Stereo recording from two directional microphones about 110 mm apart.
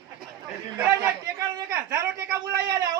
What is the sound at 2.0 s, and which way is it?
Speech, 20° right (ahead or behind).